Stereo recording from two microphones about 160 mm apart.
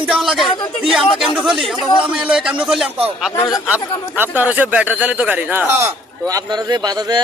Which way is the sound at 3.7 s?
10° right (ahead or behind).